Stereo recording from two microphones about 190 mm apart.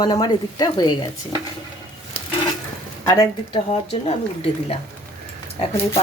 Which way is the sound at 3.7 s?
30° left (ahead or behind).